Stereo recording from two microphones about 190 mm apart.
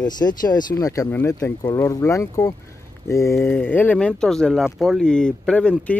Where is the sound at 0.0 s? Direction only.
20° left (ahead or behind).